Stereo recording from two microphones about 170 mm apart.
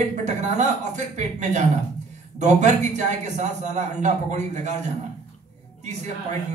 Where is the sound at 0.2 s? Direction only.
45° right (ahead or behind).